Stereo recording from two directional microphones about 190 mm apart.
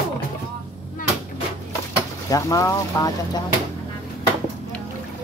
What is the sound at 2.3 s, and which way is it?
Speech, 15° left (ahead or behind).